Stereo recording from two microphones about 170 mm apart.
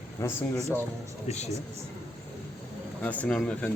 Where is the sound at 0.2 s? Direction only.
15° left (ahead or behind).